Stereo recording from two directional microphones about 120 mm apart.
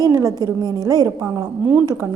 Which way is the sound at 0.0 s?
25° right (ahead or behind).